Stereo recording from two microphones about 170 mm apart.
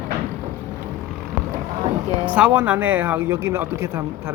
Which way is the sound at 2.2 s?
10° right (ahead or behind).